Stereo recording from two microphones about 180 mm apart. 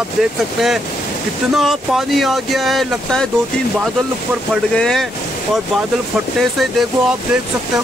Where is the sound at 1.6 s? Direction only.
Centre (ahead or behind).